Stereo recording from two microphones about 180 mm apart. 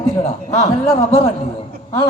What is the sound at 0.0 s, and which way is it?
Speech, 40° left (ahead or behind).